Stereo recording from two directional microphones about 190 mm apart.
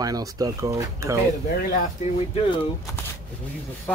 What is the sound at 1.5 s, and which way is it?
Speech, 45° left (ahead or behind).